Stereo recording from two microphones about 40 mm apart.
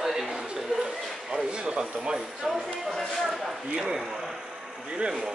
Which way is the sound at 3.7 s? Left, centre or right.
Centre.